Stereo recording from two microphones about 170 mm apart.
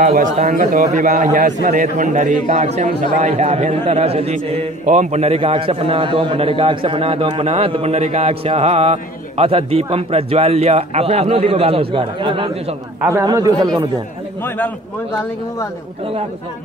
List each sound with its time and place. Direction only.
0.4 s a man's voice: 45° right (ahead or behind)
13.0 s a man's voice: 20° right (ahead or behind)